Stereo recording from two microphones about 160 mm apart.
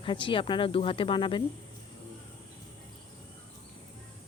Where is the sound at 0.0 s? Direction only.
30° left (ahead or behind).